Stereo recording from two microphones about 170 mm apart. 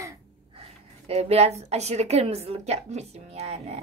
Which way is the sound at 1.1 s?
40° right (ahead or behind).